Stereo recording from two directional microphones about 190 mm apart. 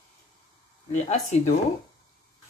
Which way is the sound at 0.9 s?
35° left (ahead or behind).